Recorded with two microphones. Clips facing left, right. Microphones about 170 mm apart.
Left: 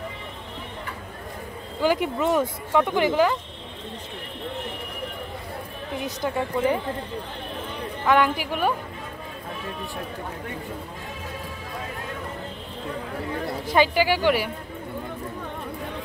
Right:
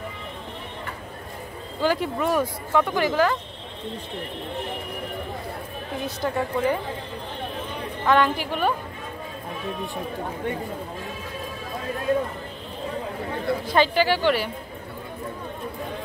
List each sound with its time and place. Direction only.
1.8 s speech: 15° left (ahead or behind)
6.0 s speech: 15° left (ahead or behind)
8.0 s speech: 10° left (ahead or behind)
13.7 s speech: 10° left (ahead or behind)